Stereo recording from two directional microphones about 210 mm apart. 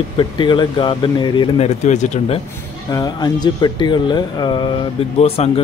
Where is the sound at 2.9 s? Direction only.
20° left (ahead or behind).